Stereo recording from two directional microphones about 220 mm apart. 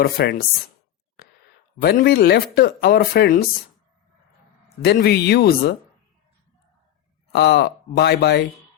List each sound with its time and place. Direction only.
0.0 s speech: 45° left (ahead or behind)
1.8 s speech: 45° left (ahead or behind)
4.8 s speech: 45° left (ahead or behind)
7.3 s speech: 45° left (ahead or behind)